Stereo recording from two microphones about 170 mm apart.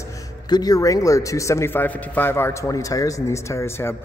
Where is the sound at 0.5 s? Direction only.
20° left (ahead or behind).